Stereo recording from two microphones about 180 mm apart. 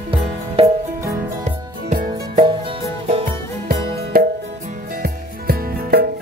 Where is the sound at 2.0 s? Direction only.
25° right (ahead or behind).